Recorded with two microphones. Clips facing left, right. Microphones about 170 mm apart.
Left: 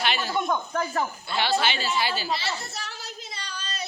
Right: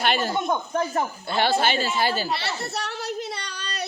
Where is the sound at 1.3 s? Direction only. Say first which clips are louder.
Right 4 dB; 50° right (ahead or behind).